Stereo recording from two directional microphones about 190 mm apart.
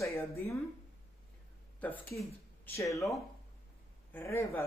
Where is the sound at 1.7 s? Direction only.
10° left (ahead or behind).